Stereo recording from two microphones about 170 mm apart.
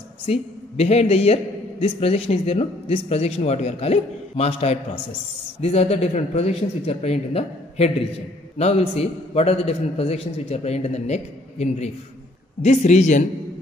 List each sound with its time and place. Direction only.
0.3 s a man's voice: 40° left (ahead or behind)